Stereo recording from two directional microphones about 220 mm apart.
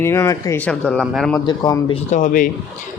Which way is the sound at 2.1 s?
35° left (ahead or behind).